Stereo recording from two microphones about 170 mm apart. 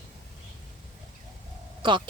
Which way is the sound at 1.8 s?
30° right (ahead or behind).